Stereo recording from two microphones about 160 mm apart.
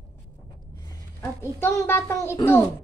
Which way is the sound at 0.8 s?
15° left (ahead or behind).